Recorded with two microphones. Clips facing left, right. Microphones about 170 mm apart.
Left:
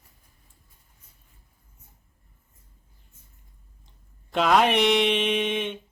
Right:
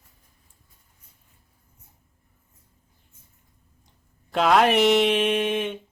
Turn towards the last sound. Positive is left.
turn(degrees=-5)  # may be behind; listen again after turning